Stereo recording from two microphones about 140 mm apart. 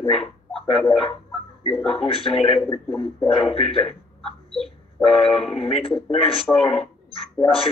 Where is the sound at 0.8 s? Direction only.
45° left (ahead or behind).